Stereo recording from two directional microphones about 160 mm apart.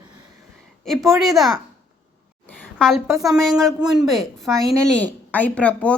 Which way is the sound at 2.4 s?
5° left (ahead or behind).